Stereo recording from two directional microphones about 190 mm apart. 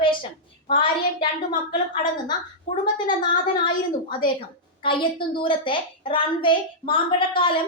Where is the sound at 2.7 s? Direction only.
25° left (ahead or behind).